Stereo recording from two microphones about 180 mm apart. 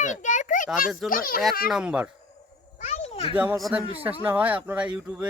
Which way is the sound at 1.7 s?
5° right (ahead or behind).